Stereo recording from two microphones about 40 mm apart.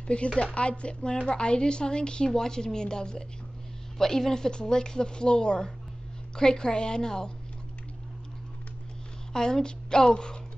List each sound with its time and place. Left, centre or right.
0.0 s a woman's voice: left
9.3 s a woman's voice: centre